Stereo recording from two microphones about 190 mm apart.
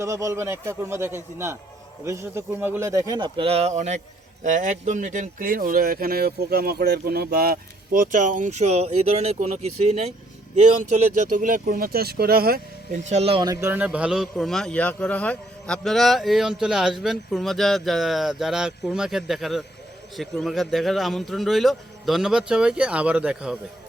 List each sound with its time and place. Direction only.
0.0 s a man's voice: 15° right (ahead or behind); by 13.0 s 50° right (ahead or behind)
13.1 s speech: 35° right (ahead or behind)
13.5 s a man's voice: 15° right (ahead or behind)